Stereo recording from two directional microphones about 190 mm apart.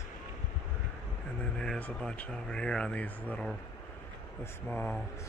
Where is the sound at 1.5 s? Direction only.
5° left (ahead or behind).